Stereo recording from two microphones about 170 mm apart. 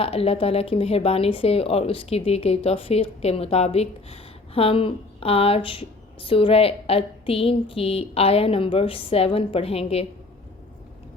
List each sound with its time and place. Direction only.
0.0 s speech: 35° left (ahead or behind)